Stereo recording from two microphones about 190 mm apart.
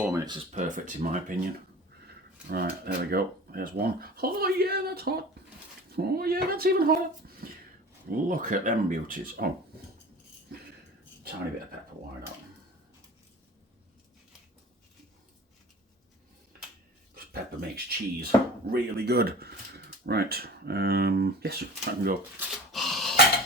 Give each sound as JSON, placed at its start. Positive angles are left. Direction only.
{"t": 0.0, "sound": "a sound", "side_deg": -15}
{"t": 0.5, "sound": "speech", "side_deg": -40}
{"t": 2.0, "sound": "speech", "side_deg": -55}
{"t": 7.4, "sound": "a sound", "side_deg": -50}
{"t": 8.1, "sound": "speech", "side_deg": -45}
{"t": 17.6, "sound": "speech", "side_deg": -55}
{"t": 22.4, "sound": "dog", "side_deg": 0}